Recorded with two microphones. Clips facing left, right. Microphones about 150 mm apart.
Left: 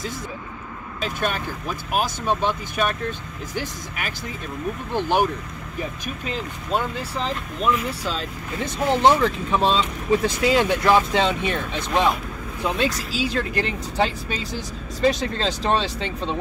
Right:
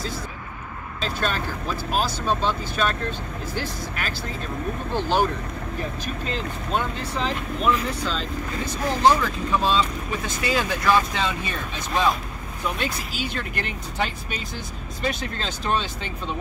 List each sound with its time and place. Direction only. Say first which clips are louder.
1.0 s speech: left 1 dB; 15° left (ahead or behind)
8.8 s speech: left 3 dB; 25° left (ahead or behind)
12.8 s speech: left 5 dB; 90° left
13.4 s speech: left 6 dB; 35° left (ahead or behind)